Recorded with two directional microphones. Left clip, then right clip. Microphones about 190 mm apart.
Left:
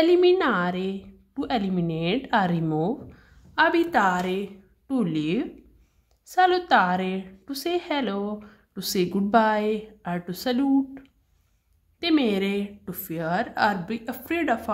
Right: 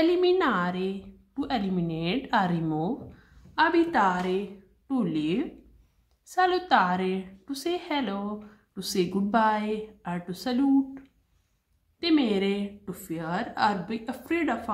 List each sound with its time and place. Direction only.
0.0 s a woman's voice: 35° left (ahead or behind)